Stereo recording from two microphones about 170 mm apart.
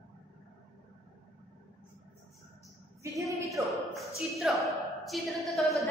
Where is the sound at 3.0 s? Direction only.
20° right (ahead or behind).